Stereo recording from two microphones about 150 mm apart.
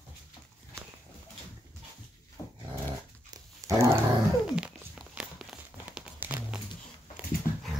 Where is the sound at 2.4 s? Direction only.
20° left (ahead or behind).